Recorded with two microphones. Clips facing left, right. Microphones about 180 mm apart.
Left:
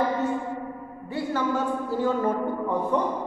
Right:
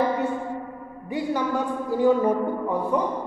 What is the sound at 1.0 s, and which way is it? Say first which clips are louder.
A man's voice: right 1 dB; 15° right (ahead or behind).